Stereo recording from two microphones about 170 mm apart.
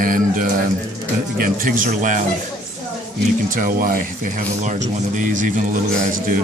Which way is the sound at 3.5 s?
55° right (ahead or behind).